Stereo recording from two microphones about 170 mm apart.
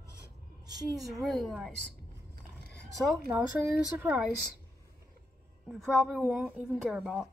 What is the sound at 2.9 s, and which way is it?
A woman's voice, centre (ahead or behind).